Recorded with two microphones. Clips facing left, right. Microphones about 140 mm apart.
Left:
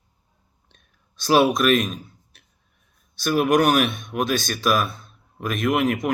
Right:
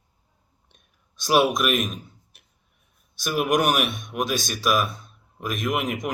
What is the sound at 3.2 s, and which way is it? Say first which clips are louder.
Speech: left 4 dB; 15° right (ahead or behind).